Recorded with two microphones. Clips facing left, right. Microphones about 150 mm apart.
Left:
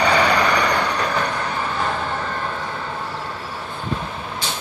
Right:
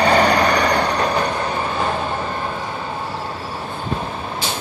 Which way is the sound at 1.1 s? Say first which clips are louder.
Right 3 dB; 20° right (ahead or behind).